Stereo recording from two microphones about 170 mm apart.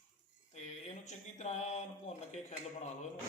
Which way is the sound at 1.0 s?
40° left (ahead or behind).